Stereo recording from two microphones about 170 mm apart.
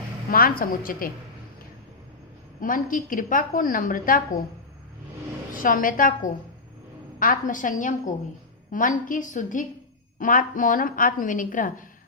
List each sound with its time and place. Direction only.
0.3 s a woman's voice: 60° left (ahead or behind)
2.6 s a woman's voice: 55° left (ahead or behind)
5.5 s a woman's voice: 55° left (ahead or behind)